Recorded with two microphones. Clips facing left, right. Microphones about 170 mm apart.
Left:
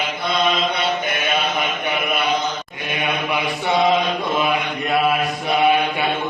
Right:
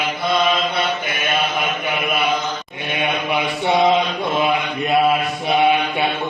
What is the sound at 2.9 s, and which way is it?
Mantra, 20° right (ahead or behind).